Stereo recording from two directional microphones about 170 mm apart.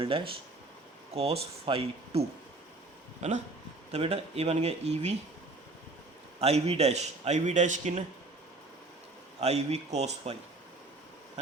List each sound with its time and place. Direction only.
1.1 s a man's voice: 35° right (ahead or behind)
6.4 s a man's voice: 40° right (ahead or behind)
9.4 s a man's voice: 40° right (ahead or behind)